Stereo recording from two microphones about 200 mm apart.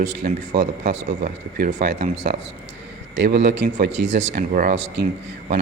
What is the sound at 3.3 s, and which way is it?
Speech, 55° right (ahead or behind).